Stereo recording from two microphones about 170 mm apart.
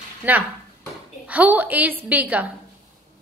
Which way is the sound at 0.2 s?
10° right (ahead or behind).